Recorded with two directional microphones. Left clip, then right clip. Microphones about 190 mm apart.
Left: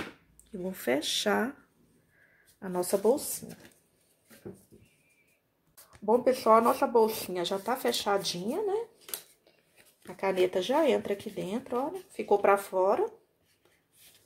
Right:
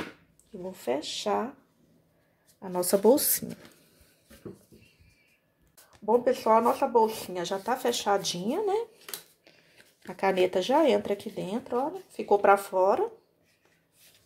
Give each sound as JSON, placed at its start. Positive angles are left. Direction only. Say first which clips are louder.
{"t": 0.7, "sound": "speech", "louder": "left 1 dB", "side_deg": 25}
{"t": 2.6, "sound": "speech", "louder": "right 1 dB", "side_deg": 10}
{"t": 5.9, "sound": "speech", "louder": "right 1 dB", "side_deg": 5}